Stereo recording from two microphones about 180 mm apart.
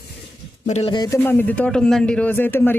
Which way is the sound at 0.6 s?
40° left (ahead or behind).